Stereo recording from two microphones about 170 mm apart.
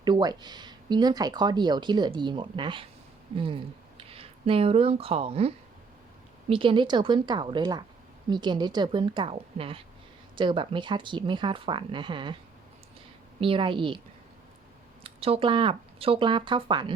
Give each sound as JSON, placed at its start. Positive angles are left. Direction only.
{"t": 0.0, "sound": "speech", "side_deg": -25}
{"t": 13.4, "sound": "speech", "side_deg": -30}
{"t": 15.0, "sound": "speech", "side_deg": -35}